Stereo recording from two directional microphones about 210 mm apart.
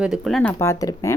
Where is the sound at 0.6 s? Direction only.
15° left (ahead or behind).